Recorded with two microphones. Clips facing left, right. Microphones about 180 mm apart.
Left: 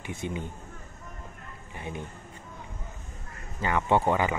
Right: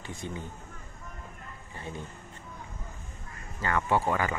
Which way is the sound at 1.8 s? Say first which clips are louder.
Left 3 dB; 20° left (ahead or behind).